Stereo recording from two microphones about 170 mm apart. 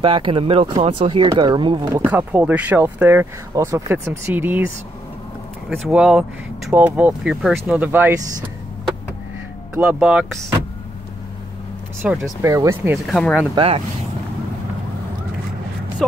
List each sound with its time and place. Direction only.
0.0 s speech: 30° right (ahead or behind)
2.0 s speech: 10° right (ahead or behind)
9.8 s speech: 5° right (ahead or behind)
12.0 s speech: 5° right (ahead or behind)
12.4 s speech: 15° right (ahead or behind)
12.9 s speech: centre (ahead or behind)
13.6 s speech: 35° right (ahead or behind)
16.0 s speech: 5° left (ahead or behind)